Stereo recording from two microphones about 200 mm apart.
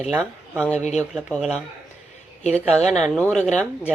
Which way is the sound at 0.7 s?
35° left (ahead or behind).